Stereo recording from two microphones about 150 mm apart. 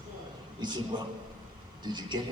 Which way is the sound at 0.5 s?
30° right (ahead or behind).